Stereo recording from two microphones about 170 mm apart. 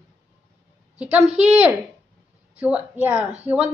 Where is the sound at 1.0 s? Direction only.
10° right (ahead or behind).